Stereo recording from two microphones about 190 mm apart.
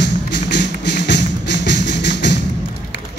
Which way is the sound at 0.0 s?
65° left (ahead or behind).